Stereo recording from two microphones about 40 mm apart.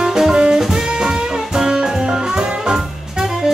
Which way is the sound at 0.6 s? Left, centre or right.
Centre.